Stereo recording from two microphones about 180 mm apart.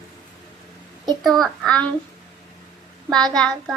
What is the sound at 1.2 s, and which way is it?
Child singing, centre (ahead or behind).